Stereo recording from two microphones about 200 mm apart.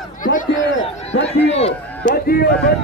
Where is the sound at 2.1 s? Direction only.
50° left (ahead or behind).